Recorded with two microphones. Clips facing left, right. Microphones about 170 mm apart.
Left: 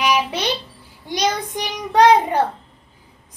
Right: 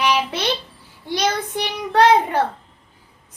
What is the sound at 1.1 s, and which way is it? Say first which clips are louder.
Child singing: even; 15° left (ahead or behind).